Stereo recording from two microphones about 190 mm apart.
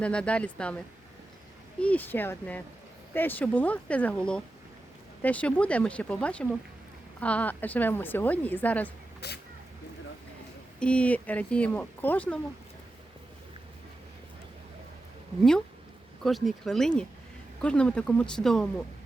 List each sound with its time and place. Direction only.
0.0 s speech: 5° left (ahead or behind)
1.8 s speech: 10° left (ahead or behind)
9.2 s speech: 60° left (ahead or behind)
10.8 s speech: 5° left (ahead or behind)
16.2 s speech: centre (ahead or behind)